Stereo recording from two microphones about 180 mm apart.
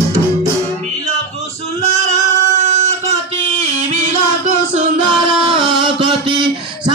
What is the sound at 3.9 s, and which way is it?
Music, 40° right (ahead or behind).